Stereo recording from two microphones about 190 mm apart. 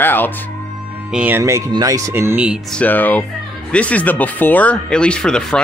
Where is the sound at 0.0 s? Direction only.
10° left (ahead or behind).